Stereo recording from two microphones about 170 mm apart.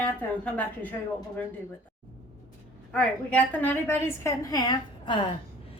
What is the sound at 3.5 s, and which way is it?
Speech, 10° left (ahead or behind).